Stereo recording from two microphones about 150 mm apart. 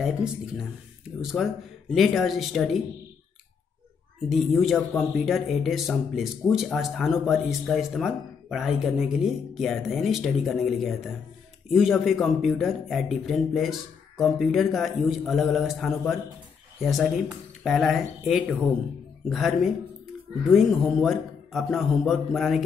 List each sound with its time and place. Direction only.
0.0 s speech: centre (ahead or behind)
4.3 s speech: centre (ahead or behind)